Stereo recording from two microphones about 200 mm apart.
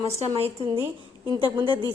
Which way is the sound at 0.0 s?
30° right (ahead or behind).